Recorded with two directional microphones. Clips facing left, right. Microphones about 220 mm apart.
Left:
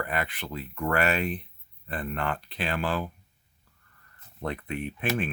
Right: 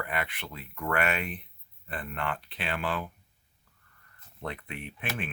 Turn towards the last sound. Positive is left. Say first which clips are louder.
# left 7 dB
turn(degrees=40)  # may be behind; listen again after turning